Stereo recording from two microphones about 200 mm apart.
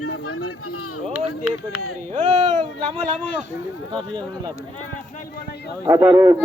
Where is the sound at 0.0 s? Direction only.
90° left.